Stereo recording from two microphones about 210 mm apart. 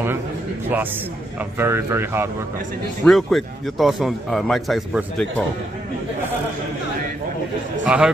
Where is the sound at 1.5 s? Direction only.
10° right (ahead or behind).